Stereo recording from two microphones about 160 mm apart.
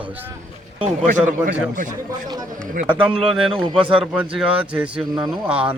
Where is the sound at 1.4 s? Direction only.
55° right (ahead or behind).